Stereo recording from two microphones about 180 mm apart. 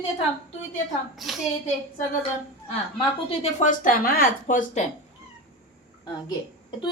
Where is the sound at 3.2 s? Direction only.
40° left (ahead or behind).